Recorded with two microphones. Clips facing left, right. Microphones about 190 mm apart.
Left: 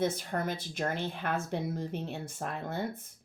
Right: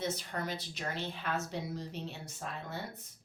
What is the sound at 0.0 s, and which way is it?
Speech, 50° left (ahead or behind).